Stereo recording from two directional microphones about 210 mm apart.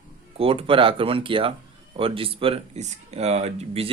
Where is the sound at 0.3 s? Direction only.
25° right (ahead or behind).